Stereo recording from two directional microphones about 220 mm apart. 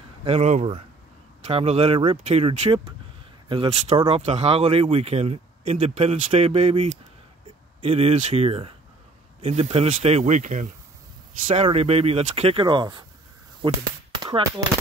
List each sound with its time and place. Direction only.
0.2 s speech: 30° right (ahead or behind)